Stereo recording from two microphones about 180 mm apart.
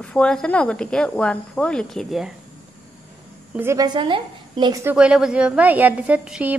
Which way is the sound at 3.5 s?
15° right (ahead or behind).